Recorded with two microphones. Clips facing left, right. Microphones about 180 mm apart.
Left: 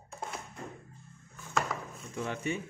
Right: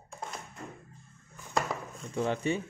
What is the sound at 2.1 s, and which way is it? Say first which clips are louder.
Speech: right 5 dB; 30° right (ahead or behind).